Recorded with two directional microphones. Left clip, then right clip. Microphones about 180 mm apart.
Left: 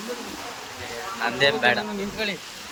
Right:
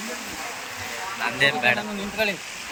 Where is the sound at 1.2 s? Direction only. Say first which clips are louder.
Left 1 dB; 20° left (ahead or behind).